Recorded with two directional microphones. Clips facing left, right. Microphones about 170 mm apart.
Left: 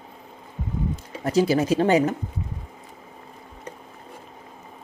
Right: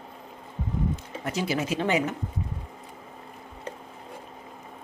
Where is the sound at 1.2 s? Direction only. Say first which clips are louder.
Left 9 dB; 40° left (ahead or behind).